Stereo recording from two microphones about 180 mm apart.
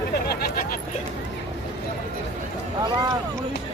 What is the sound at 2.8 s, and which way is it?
Speech, 25° right (ahead or behind).